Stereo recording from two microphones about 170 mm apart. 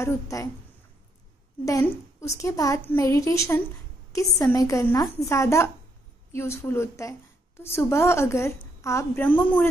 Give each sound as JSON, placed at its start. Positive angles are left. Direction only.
{"t": 0.0, "sound": "a woman's voice", "side_deg": 20}
{"t": 1.6, "sound": "a woman's voice", "side_deg": 20}